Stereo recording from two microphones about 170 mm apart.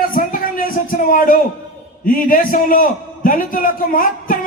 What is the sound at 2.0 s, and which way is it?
A man's voice, 55° left (ahead or behind).